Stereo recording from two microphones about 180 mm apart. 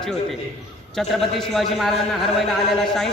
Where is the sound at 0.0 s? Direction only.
5° left (ahead or behind).